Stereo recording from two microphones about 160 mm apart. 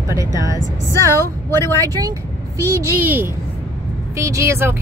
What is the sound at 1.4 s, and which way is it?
Speech, 15° left (ahead or behind).